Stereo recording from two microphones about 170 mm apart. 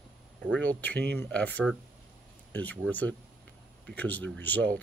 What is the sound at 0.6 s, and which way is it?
Speech, 10° left (ahead or behind).